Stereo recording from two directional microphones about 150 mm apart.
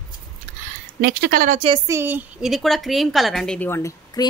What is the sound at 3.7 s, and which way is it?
Speech, 20° left (ahead or behind).